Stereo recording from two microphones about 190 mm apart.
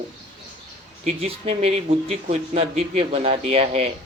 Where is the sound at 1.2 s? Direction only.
30° right (ahead or behind).